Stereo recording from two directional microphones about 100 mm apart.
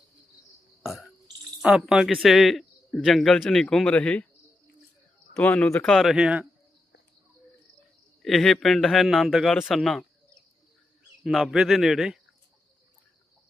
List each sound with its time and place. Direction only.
0.8 s burping: centre (ahead or behind)
1.6 s speech: 5° right (ahead or behind); by 4.3 s 10° left (ahead or behind)
5.4 s speech: 15° left (ahead or behind); by 6.5 s 5° right (ahead or behind)
8.2 s speech: centre (ahead or behind)
11.2 s a man's voice: centre (ahead or behind)